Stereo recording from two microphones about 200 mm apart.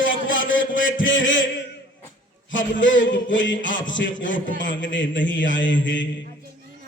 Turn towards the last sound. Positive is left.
turn(degrees=65)  # may be behind; listen again after turning